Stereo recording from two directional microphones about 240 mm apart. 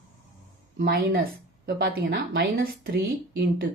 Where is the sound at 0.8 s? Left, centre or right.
Right.